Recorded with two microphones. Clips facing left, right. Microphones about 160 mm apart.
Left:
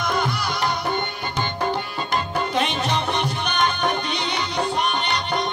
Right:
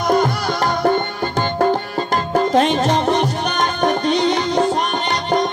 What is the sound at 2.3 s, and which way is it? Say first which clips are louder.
Music: right 11 dB; 45° right (ahead or behind).